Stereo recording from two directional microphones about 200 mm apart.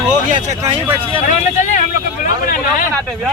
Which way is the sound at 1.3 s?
40° left (ahead or behind).